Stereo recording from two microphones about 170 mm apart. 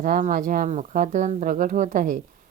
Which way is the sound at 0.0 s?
55° right (ahead or behind).